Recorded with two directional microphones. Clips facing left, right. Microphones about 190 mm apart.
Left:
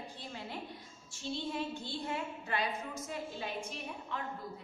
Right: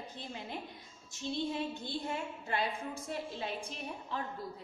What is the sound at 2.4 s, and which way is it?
A woman's voice, 30° right (ahead or behind).